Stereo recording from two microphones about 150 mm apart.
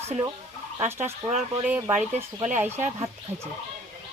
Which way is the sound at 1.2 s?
Centre (ahead or behind).